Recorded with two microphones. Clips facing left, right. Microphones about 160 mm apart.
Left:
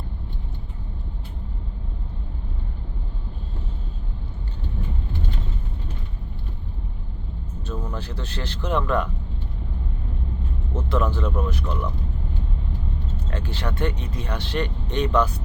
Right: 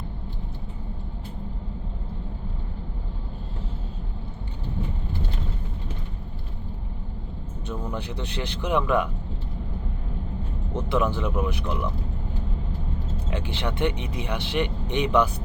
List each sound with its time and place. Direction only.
7.7 s speech: 15° right (ahead or behind)
10.8 s speech: 10° right (ahead or behind)
13.3 s speech: 15° right (ahead or behind)